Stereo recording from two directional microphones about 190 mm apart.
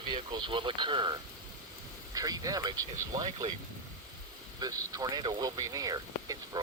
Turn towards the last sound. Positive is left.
turn(degrees=-20)  # may be behind; listen again after turning